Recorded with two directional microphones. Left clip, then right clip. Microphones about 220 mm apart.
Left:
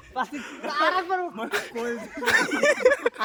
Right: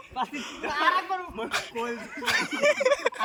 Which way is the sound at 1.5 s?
25° left (ahead or behind).